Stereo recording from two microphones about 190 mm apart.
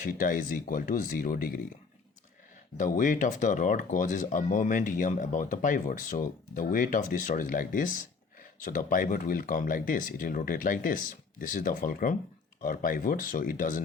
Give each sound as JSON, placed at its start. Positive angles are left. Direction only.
{"t": 0.0, "sound": "speech", "side_deg": 45}
{"t": 2.7, "sound": "speech", "side_deg": 45}